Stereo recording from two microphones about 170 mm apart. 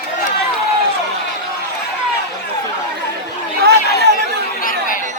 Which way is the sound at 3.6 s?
70° right (ahead or behind).